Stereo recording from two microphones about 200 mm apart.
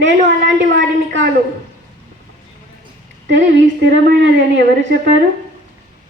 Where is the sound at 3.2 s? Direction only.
65° right (ahead or behind).